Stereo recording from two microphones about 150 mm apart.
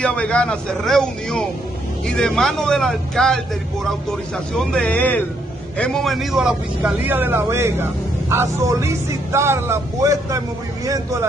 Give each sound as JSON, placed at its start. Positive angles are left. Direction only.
{"t": 0.0, "sound": "speech", "side_deg": 5}
{"t": 4.6, "sound": "a man's voice", "side_deg": 5}